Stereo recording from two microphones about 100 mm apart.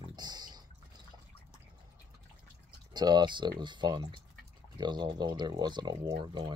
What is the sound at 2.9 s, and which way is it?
Speech, 45° right (ahead or behind).